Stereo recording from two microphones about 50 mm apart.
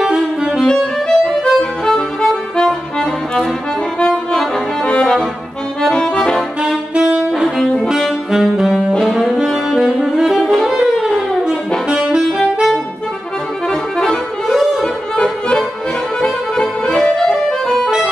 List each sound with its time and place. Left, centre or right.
0.0 s saxophone: centre
0.7 s music: centre
4.0 s brass instrument: centre
5.8 s accordion: centre
7.3 s brass instrument: centre
8.3 s saxophone: centre
9.1 s brass instrument: centre
9.8 s saxophone: centre
12.4 s saxophone: centre
14.5 s music: centre
14.8 s music: centre
16.2 s accordion: centre